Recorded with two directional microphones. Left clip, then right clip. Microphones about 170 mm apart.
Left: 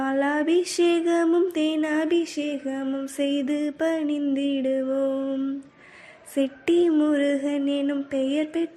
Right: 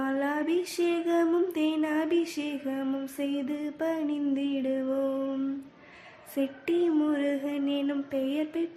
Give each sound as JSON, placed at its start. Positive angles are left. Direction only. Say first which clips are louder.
{"t": 0.0, "sound": "mantra", "louder": "left 6 dB", "side_deg": 25}
{"t": 6.3, "sound": "mantra", "louder": "left 7 dB", "side_deg": 30}